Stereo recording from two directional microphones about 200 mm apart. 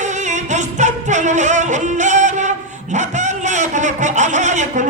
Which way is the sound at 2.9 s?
35° right (ahead or behind).